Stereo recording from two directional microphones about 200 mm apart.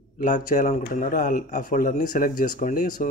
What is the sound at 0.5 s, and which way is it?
Speech, 40° left (ahead or behind).